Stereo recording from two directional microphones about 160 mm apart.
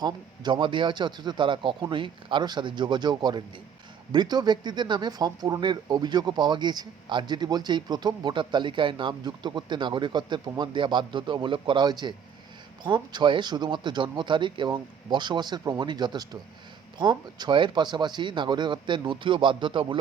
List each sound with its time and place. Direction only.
0.0 s speech: 30° right (ahead or behind)